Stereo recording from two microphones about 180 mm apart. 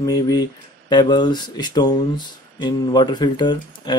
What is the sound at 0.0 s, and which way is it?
Speech, 20° left (ahead or behind).